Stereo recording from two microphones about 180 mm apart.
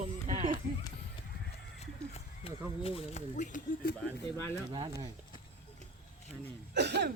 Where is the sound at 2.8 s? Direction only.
30° left (ahead or behind).